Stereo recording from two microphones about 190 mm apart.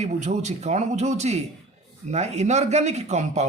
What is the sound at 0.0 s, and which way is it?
Speech, 40° right (ahead or behind).